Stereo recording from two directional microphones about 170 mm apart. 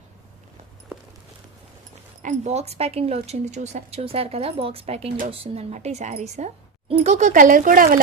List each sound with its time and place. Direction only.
2.2 s a woman's voice: 40° right (ahead or behind)